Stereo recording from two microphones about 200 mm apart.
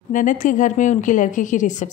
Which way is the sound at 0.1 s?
40° left (ahead or behind).